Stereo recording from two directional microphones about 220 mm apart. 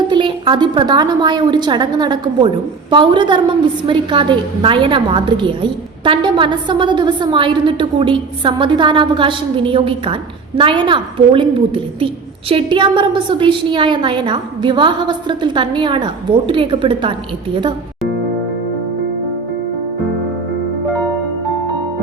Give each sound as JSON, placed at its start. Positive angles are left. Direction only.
{"t": 0.1, "sound": "a woman's voice", "side_deg": -20}